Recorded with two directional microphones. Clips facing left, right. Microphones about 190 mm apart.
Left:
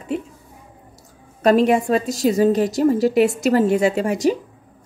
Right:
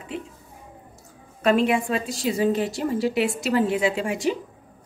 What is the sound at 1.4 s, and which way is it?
A woman's voice, 40° left (ahead or behind).